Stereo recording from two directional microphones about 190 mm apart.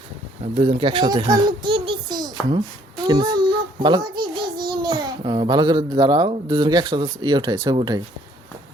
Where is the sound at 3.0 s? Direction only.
25° right (ahead or behind).